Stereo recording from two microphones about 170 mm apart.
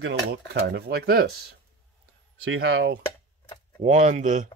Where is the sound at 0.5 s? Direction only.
70° right (ahead or behind).